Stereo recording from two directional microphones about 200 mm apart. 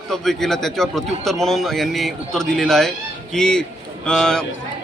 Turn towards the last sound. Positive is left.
turn(degrees=5)  # may be behind; listen again after turning